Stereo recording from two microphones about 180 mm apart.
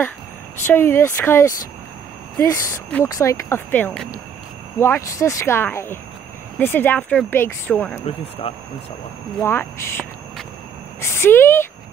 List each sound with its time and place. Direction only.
0.7 s speech: 10° left (ahead or behind)
8.0 s speech: 35° left (ahead or behind)
9.4 s speech: 15° left (ahead or behind)